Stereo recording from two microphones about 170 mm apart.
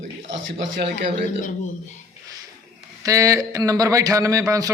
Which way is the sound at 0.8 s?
80° right.